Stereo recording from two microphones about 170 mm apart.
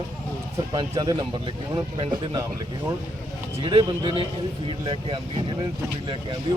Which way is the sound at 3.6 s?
30° right (ahead or behind).